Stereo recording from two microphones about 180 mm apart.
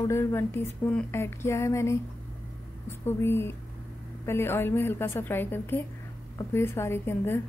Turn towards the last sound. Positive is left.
turn(degrees=15)  # may be behind; listen again after turning